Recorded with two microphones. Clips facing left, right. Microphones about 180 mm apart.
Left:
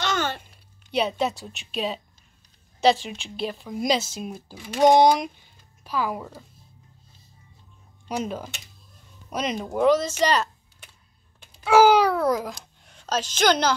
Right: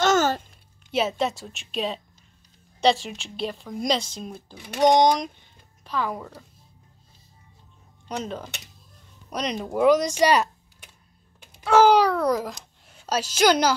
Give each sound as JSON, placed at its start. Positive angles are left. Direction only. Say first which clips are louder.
{"t": 0.0, "sound": "a sound", "louder": "right 7 dB", "side_deg": -45}
{"t": 0.9, "sound": "speech", "louder": "even", "side_deg": 0}
{"t": 8.1, "sound": "speech", "louder": "left 2 dB", "side_deg": 10}
{"t": 11.6, "sound": "a child's voice", "louder": "even", "side_deg": 5}